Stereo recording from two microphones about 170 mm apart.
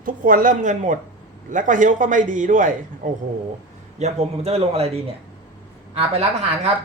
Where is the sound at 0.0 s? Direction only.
55° right (ahead or behind).